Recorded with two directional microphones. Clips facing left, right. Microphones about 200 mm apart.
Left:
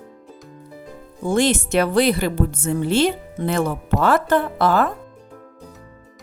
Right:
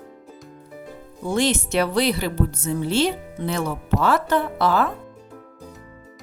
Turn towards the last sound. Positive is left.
turn(degrees=50)  # may be behind; listen again after turning